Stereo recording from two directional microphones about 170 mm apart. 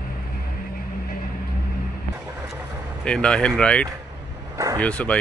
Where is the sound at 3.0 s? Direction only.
5° left (ahead or behind).